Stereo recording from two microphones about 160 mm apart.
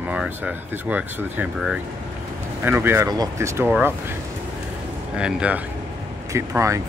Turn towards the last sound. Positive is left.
turn(degrees=-20)  # may be behind; listen again after turning